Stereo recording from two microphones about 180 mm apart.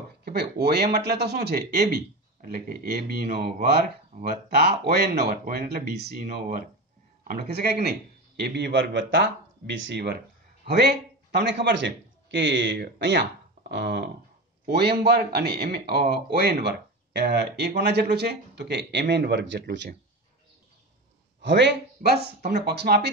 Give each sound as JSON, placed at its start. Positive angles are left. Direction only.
{"t": 0.2, "sound": "a man's voice", "side_deg": -65}
{"t": 10.6, "sound": "a man's voice", "side_deg": -65}
{"t": 21.4, "sound": "a man's voice", "side_deg": -75}